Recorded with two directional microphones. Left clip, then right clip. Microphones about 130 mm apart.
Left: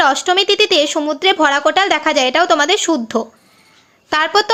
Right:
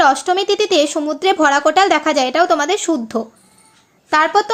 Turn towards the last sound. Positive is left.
turn(degrees=20)  # may be behind; listen again after turning